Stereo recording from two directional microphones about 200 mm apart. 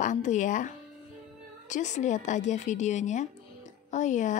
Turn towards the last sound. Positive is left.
turn(degrees=35)  # may be behind; listen again after turning